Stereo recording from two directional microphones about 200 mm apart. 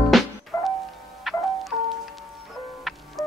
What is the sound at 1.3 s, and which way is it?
Music, centre (ahead or behind).